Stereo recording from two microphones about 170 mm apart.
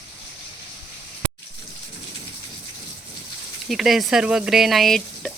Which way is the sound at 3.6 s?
Centre (ahead or behind).